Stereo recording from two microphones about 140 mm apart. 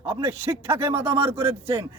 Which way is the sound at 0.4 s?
15° right (ahead or behind).